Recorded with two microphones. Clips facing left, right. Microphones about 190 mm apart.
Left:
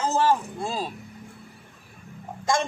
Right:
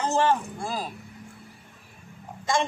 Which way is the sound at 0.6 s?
25° left (ahead or behind).